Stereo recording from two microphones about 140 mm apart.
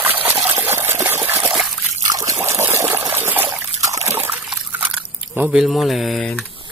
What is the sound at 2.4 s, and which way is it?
Water, 20° right (ahead or behind).